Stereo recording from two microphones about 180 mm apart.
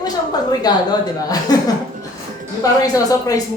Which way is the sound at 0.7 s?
20° left (ahead or behind).